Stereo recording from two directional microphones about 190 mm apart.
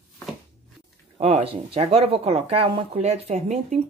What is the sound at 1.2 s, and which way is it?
Speech, 30° right (ahead or behind).